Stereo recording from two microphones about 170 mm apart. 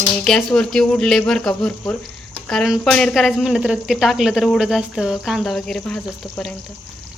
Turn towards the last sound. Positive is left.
turn(degrees=5)  # may be behind; listen again after turning